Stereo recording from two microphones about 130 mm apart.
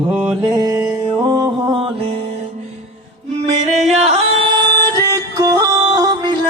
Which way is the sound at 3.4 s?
50° right (ahead or behind).